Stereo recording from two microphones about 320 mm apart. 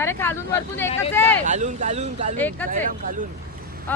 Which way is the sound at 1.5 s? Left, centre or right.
Right.